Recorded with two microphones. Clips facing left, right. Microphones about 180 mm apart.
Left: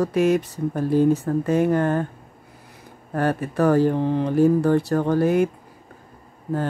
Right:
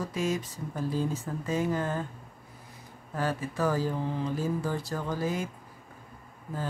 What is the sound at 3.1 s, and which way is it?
Speech, 60° left (ahead or behind).